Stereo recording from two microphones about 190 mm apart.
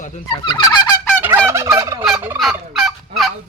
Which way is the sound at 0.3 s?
25° left (ahead or behind).